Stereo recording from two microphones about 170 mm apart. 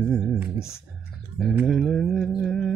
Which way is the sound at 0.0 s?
Centre (ahead or behind).